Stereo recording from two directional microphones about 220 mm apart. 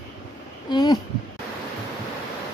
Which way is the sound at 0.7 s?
20° left (ahead or behind).